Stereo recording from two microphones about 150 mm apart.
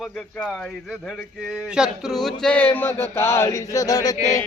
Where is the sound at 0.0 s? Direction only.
Centre (ahead or behind); by 4.4 s 25° left (ahead or behind).